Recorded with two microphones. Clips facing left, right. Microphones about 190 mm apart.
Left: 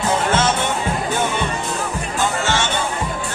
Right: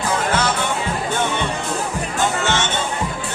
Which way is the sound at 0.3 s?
25° left (ahead or behind).